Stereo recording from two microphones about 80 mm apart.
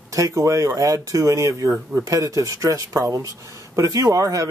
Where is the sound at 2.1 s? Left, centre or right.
Right.